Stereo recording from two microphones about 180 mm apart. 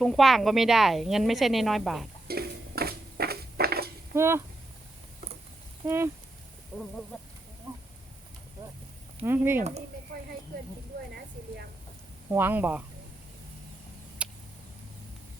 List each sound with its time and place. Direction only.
0.0 s speech: centre (ahead or behind)
2.2 s a sound: 60° right (ahead or behind)
4.1 s speech: 15° right (ahead or behind)
5.8 s speech: 15° right (ahead or behind)
7.1 s speech: centre (ahead or behind)
9.2 s speech: 10° right (ahead or behind)
12.3 s speech: 10° right (ahead or behind)
14.2 s a sound: 5° right (ahead or behind)